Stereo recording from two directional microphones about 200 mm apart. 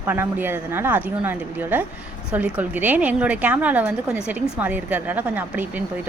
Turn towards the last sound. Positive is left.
turn(degrees=-10)  # may be behind; listen again after turning